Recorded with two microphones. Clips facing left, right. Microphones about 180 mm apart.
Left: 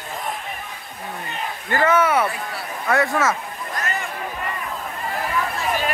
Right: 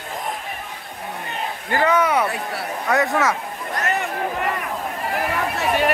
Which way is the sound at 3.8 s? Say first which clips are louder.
Right 7 dB; 70° right (ahead or behind).